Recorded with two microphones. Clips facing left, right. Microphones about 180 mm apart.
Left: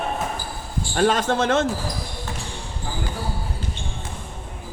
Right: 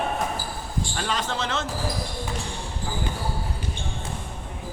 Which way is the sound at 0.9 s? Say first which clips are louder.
Left 11 dB; 50° left (ahead or behind).